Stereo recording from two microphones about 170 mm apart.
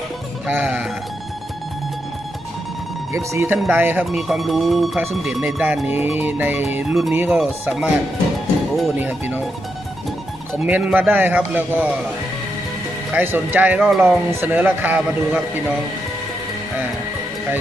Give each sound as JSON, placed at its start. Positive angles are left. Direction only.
{"t": 0.5, "sound": "speech", "side_deg": -10}
{"t": 3.1, "sound": "speech", "side_deg": -15}
{"t": 8.9, "sound": "speech", "side_deg": -10}
{"t": 10.5, "sound": "speech", "side_deg": -10}
{"t": 13.1, "sound": "speech", "side_deg": -10}